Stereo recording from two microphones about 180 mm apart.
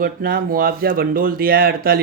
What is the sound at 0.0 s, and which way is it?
Speech, 55° right (ahead or behind).